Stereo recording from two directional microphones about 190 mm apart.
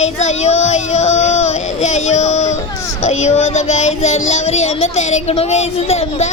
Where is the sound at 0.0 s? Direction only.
35° left (ahead or behind).